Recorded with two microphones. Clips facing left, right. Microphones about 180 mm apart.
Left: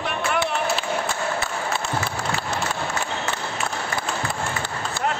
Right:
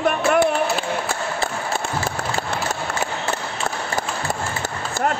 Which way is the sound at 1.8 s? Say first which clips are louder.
Right 1 dB; 50° right (ahead or behind).